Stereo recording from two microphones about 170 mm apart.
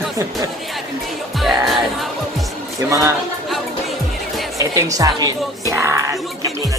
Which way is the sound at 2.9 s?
20° right (ahead or behind).